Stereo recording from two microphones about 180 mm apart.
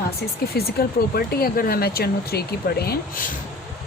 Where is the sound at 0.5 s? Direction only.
60° left (ahead or behind).